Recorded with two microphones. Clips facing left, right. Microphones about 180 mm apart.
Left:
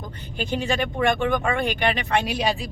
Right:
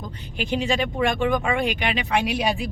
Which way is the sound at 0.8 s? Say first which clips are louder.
Even; centre (ahead or behind).